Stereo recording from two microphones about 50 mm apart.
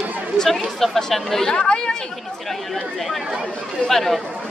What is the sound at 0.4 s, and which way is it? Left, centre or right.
Speech, centre.